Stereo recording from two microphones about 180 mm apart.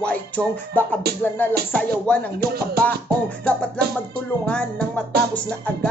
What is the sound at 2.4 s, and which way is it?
Music, 60° right (ahead or behind).